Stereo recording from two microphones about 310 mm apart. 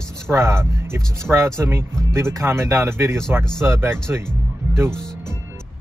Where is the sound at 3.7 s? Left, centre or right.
Centre.